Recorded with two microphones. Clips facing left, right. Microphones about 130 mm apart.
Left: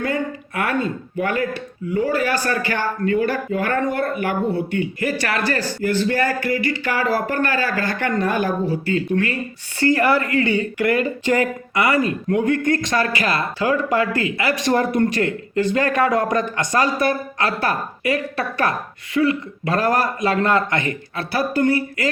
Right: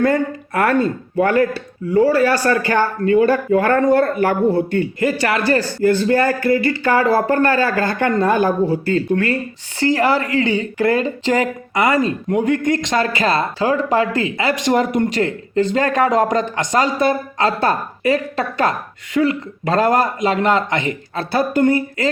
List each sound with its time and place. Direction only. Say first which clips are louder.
0.0 s speech: right 6 dB; 40° right (ahead or behind)
4.9 s a woman's voice: right 4 dB; 25° right (ahead or behind)
8.8 s a woman's voice: right 3 dB; 35° right (ahead or behind); by 15.2 s 15° right (ahead or behind)
15.2 s a woman's voice: right 2 dB; 30° right (ahead or behind)